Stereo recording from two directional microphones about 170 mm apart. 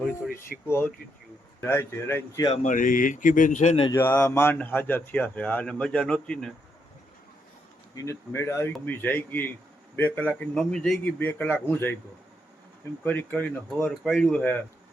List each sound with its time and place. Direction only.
0.5 s speech: centre (ahead or behind)
1.6 s speech: 15° left (ahead or behind)
2.5 s speech: 50° left (ahead or behind)
3.9 s speech: 15° left (ahead or behind)
7.9 s speech: 20° left (ahead or behind)
13.1 s speech: 10° left (ahead or behind)